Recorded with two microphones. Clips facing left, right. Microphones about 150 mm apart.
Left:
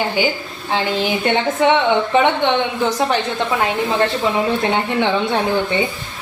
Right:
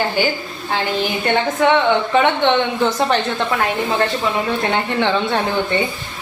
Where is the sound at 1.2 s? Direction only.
20° left (ahead or behind).